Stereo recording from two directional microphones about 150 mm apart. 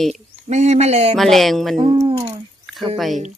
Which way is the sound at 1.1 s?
Centre (ahead or behind).